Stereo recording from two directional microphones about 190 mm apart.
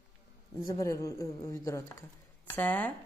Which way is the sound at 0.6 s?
15° left (ahead or behind).